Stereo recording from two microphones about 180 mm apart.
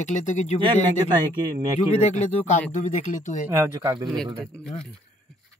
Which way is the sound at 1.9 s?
40° left (ahead or behind).